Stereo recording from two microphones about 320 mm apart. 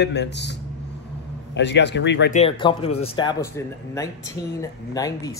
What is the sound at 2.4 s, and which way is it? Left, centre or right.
Speech, centre.